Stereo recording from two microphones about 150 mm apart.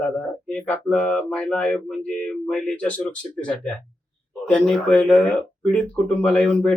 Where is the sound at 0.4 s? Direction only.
10° left (ahead or behind).